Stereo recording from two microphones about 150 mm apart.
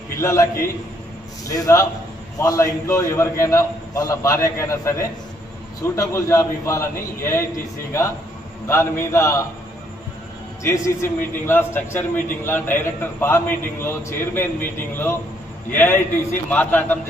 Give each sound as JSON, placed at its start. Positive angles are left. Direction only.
{"t": 0.2, "sound": "a man's voice", "side_deg": 20}
{"t": 8.6, "sound": "a man's voice", "side_deg": 15}
{"t": 10.6, "sound": "a man's voice", "side_deg": 20}